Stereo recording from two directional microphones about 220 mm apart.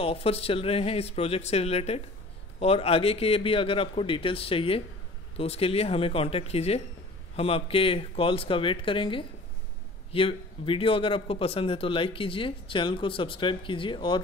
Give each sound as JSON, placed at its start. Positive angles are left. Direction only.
{"t": 0.0, "sound": "a man's voice", "side_deg": 25}